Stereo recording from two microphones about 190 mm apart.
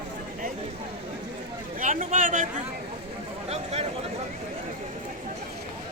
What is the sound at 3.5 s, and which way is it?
Speech, 35° right (ahead or behind).